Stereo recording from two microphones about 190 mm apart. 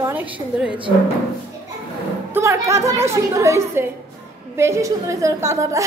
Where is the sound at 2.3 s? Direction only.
15° right (ahead or behind).